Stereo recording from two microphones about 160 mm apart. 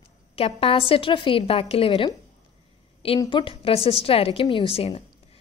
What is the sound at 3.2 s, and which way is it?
A woman's voice, 30° left (ahead or behind).